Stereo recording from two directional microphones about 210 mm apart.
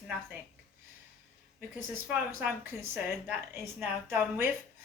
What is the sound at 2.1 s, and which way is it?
Speech, 10° right (ahead or behind).